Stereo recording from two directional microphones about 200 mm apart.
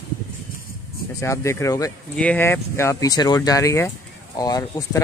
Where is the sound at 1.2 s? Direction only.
15° left (ahead or behind).